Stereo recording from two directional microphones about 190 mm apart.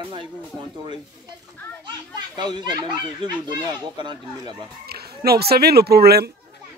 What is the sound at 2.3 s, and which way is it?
Speech, 20° right (ahead or behind).